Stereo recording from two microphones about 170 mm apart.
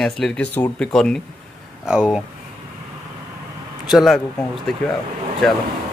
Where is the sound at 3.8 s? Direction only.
Centre (ahead or behind).